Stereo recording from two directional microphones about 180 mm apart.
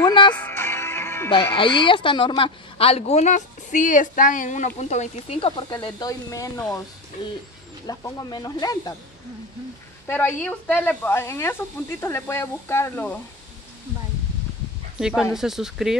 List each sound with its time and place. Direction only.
0.0 s music: 25° left (ahead or behind)
0.3 s music: 10° left (ahead or behind)
1.3 s speech: 30° left (ahead or behind)
7.8 s speech: 20° left (ahead or behind)
10.0 s speech: 10° left (ahead or behind)
15.0 s speech: 5° right (ahead or behind)